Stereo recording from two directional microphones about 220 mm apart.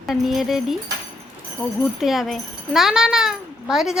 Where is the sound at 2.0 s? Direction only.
Centre (ahead or behind).